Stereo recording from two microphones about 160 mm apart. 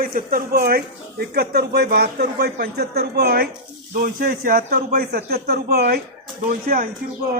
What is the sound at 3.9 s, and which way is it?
Speech, 60° right (ahead or behind).